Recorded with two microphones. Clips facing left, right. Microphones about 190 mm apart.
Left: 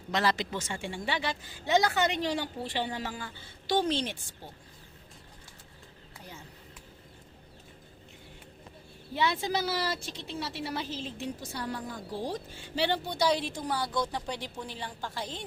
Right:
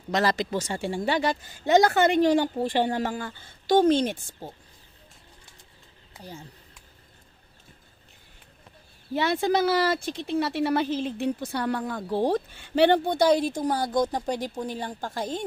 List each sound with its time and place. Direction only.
0.1 s a woman's voice: 40° right (ahead or behind)
9.1 s speech: 50° right (ahead or behind)